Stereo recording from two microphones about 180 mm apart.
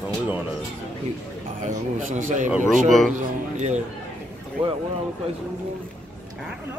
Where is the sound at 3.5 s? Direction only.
40° right (ahead or behind).